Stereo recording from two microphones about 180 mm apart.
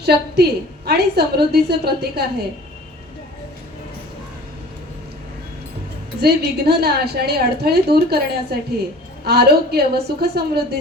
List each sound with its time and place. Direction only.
0.0 s a woman's voice: 65° right (ahead or behind)
6.1 s a woman's voice: 65° right (ahead or behind)